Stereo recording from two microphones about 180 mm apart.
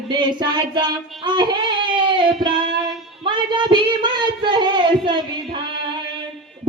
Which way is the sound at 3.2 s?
25° right (ahead or behind).